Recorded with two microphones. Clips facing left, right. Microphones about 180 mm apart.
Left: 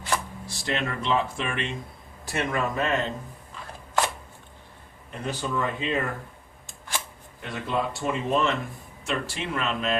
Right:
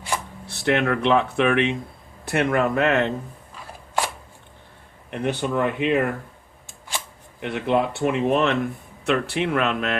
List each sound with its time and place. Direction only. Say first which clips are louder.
0.4 s speech: right 8 dB; 65° right (ahead or behind)
5.1 s speech: right 6 dB; 65° right (ahead or behind)
7.4 s speech: right 7 dB; 65° right (ahead or behind)